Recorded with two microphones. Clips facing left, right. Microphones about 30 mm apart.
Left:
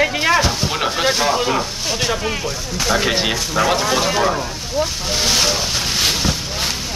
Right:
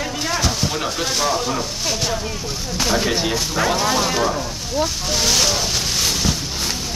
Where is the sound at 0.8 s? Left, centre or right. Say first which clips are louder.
Left 6 dB; left.